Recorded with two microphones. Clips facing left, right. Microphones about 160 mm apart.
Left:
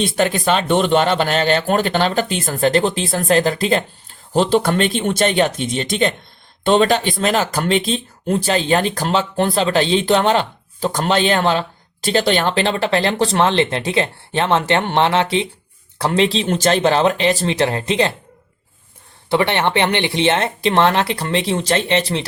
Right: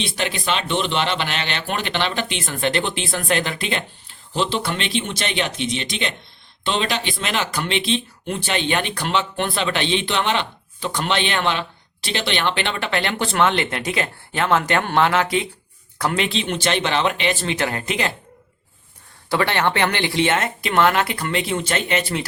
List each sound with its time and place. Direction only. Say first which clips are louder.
0.0 s speech: left 8 dB; 45° left (ahead or behind)
4.4 s speech: left 8 dB; 50° left (ahead or behind); by 18.1 s 30° left (ahead or behind)
19.3 s speech: left 3 dB; 20° left (ahead or behind)